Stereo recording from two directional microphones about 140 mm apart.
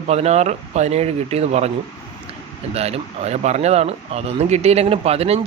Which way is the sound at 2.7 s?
45° right (ahead or behind).